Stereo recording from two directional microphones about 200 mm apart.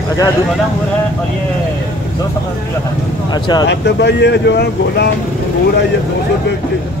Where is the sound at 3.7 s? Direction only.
60° left (ahead or behind).